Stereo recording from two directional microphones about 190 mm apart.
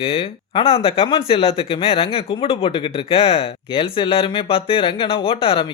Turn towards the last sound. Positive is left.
turn(degrees=30)  # may be behind; listen again after turning